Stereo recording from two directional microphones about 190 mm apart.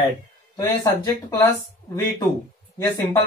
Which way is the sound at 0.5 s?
20° left (ahead or behind).